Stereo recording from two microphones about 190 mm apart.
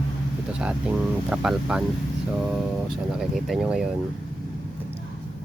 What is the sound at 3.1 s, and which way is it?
Speech, centre (ahead or behind).